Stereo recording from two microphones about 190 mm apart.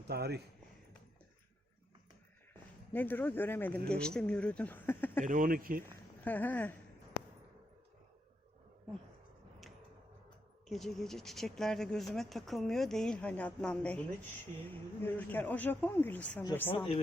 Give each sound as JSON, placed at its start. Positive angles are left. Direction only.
{"t": 0.1, "sound": "a man's voice", "side_deg": -60}
{"t": 2.9, "sound": "speech", "side_deg": 10}
{"t": 5.2, "sound": "speech", "side_deg": -45}
{"t": 6.2, "sound": "speech", "side_deg": 10}
{"t": 10.7, "sound": "speech", "side_deg": 0}
{"t": 16.7, "sound": "speech", "side_deg": 30}